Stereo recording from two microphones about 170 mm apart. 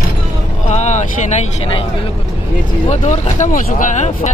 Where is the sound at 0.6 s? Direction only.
40° left (ahead or behind).